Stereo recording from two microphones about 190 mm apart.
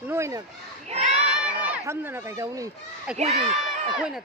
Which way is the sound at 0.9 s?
35° right (ahead or behind).